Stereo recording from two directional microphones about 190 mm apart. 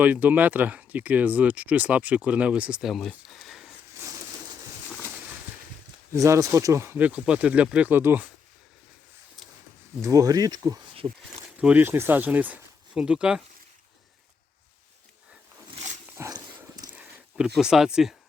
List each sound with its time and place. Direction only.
0.0 s speech: 10° right (ahead or behind)
6.1 s speech: 15° right (ahead or behind)
10.0 s speech: 20° right (ahead or behind)
11.4 s speech: 5° right (ahead or behind)
16.1 s dog: 15° right (ahead or behind)
16.9 s speech: 5° right (ahead or behind)